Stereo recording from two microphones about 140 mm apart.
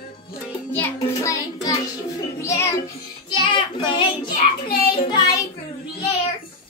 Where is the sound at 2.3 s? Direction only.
20° left (ahead or behind).